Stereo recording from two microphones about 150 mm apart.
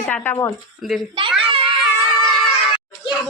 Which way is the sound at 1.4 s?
35° right (ahead or behind).